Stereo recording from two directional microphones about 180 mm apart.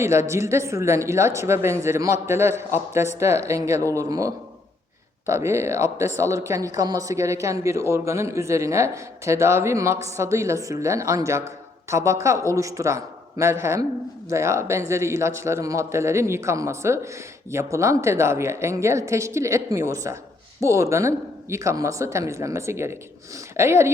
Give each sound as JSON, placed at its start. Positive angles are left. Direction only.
{"t": 0.0, "sound": "a man's voice", "side_deg": -15}